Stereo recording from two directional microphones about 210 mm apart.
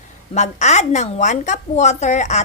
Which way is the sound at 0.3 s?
35° left (ahead or behind).